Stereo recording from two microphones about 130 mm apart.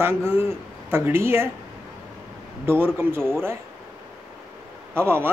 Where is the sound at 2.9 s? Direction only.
20° right (ahead or behind).